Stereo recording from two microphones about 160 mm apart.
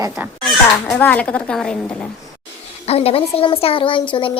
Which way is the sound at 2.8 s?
40° left (ahead or behind).